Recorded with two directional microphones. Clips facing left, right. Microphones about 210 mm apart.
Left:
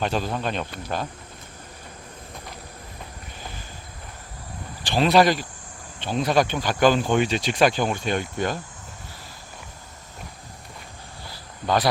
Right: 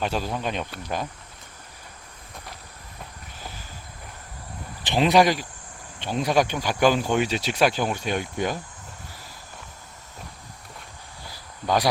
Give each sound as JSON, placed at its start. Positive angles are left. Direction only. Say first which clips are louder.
{"t": 0.0, "sound": "speech", "louder": "left 1 dB", "side_deg": -5}
{"t": 4.8, "sound": "speech", "louder": "left 1 dB", "side_deg": -20}
{"t": 11.6, "sound": "speech", "louder": "left 1 dB", "side_deg": -10}